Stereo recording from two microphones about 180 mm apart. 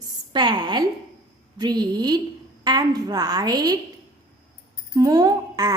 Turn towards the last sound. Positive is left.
turn(degrees=-20)  # may be behind; listen again after turning